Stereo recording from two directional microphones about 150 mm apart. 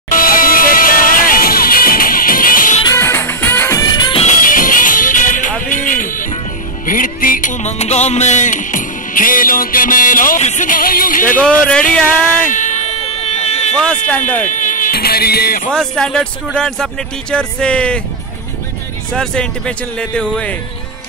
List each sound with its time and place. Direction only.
0.1 s music: 70° left (ahead or behind)
2.8 s music: 20° left (ahead or behind)
4.2 s music: 60° left (ahead or behind)
11.4 s speech: 5° left (ahead or behind)
12.4 s a sound: 55° left (ahead or behind)
14.4 s speech: 55° left (ahead or behind); by 15.7 s 80° left
15.7 s speech: 5° left (ahead or behind)
19.1 s speech: 5° left (ahead or behind)